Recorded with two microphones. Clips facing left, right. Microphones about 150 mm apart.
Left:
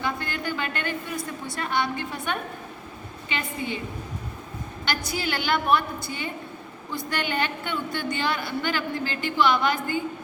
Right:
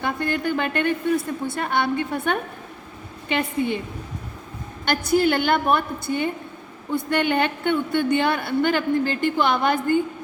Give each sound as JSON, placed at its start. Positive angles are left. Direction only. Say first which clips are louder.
{"t": 0.0, "sound": "a woman's voice", "louder": "right 5 dB", "side_deg": -55}
{"t": 4.9, "sound": "a woman's voice", "louder": "right 10 dB", "side_deg": -55}